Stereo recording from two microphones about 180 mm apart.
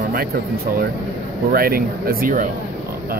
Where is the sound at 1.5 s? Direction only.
55° right (ahead or behind).